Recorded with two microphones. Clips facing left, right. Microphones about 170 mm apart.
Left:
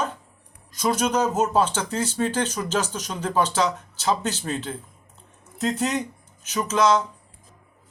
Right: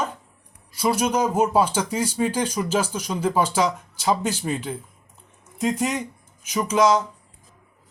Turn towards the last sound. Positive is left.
turn(degrees=-10)  # may be behind; listen again after turning